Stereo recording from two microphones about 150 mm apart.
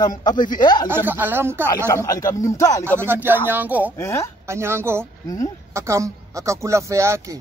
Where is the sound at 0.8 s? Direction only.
15° right (ahead or behind).